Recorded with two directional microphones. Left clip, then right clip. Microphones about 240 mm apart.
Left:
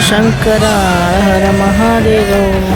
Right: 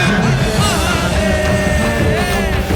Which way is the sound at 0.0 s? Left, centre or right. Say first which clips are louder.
Left 5 dB; centre.